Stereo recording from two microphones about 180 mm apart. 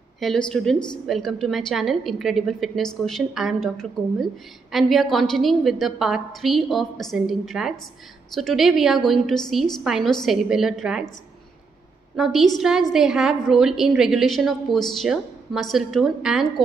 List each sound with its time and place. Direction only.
0.2 s a woman's voice: 5° left (ahead or behind)
12.2 s a woman's voice: centre (ahead or behind)